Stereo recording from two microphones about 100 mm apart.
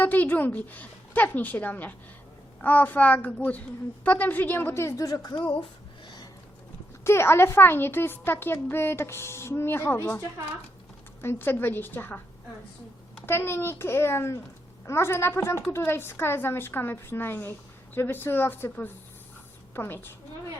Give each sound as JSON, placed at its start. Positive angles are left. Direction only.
{"t": 0.0, "sound": "a woman's voice", "side_deg": 15}
{"t": 7.0, "sound": "a woman's voice", "side_deg": 25}
{"t": 11.2, "sound": "a woman's voice", "side_deg": 20}
{"t": 13.2, "sound": "a woman's voice", "side_deg": 25}